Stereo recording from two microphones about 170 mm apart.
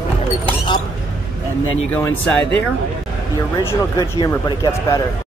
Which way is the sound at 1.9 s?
10° left (ahead or behind).